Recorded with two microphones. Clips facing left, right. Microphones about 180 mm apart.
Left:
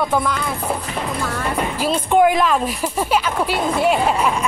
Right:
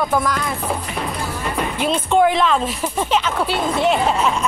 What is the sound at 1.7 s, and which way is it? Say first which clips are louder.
Speech: even; 5° left (ahead or behind).